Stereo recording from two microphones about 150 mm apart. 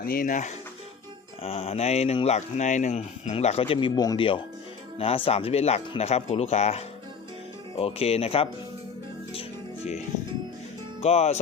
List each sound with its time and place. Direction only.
0.0 s speech: 75° left (ahead or behind)
1.4 s speech: 40° left (ahead or behind); by 4.3 s 25° left (ahead or behind)
4.9 s speech: 40° left (ahead or behind)
9.3 s music: 40° left (ahead or behind)
11.0 s speech: 45° left (ahead or behind)